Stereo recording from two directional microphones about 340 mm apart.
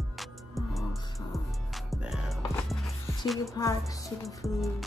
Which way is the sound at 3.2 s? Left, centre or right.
Centre.